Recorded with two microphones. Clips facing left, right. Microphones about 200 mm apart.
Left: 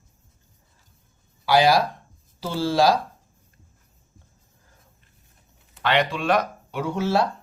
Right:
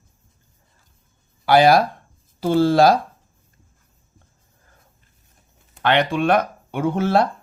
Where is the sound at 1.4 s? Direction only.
55° right (ahead or behind).